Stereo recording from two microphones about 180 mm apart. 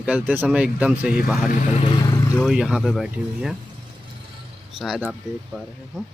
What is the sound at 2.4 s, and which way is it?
Speech, 5° right (ahead or behind).